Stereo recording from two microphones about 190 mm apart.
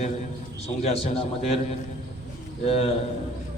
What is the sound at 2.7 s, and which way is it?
Speech, 30° left (ahead or behind).